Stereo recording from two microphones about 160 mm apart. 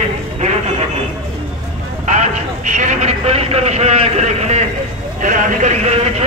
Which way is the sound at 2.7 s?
50° right (ahead or behind).